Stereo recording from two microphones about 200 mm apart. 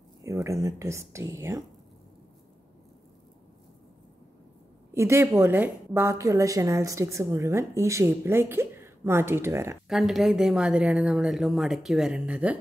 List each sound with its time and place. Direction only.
0.2 s a woman's voice: 15° right (ahead or behind)
4.9 s a woman's voice: 15° right (ahead or behind)
9.8 s speech: centre (ahead or behind)